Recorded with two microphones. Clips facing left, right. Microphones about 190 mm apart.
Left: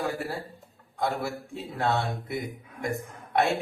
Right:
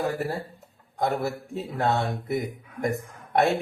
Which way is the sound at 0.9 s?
40° right (ahead or behind).